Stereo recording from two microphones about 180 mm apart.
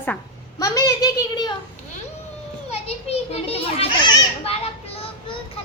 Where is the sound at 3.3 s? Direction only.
35° left (ahead or behind).